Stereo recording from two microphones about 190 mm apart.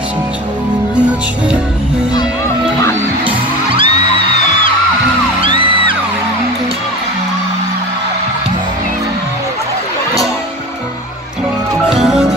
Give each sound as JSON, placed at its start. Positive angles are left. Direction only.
{"t": 3.3, "sound": "music", "side_deg": -25}
{"t": 5.4, "sound": "music", "side_deg": -25}
{"t": 11.9, "sound": "music", "side_deg": 0}